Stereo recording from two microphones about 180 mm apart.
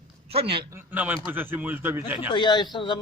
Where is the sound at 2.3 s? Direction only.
25° left (ahead or behind).